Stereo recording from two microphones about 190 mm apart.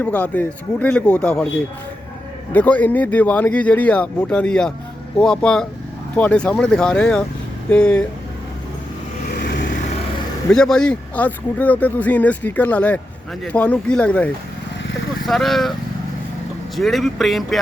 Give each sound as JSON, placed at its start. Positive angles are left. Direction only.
{"t": 0.0, "sound": "speech", "side_deg": 10}
{"t": 2.5, "sound": "speech", "side_deg": 10}
{"t": 9.3, "sound": "vehicle", "side_deg": 60}
{"t": 10.5, "sound": "speech", "side_deg": 5}
{"t": 15.3, "sound": "speech", "side_deg": 0}
{"t": 16.7, "sound": "speech", "side_deg": 0}